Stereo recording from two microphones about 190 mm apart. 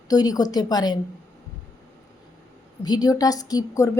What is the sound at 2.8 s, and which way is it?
A woman's voice, 20° left (ahead or behind).